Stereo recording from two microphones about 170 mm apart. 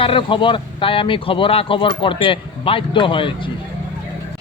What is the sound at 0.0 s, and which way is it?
A man's voice, 30° left (ahead or behind).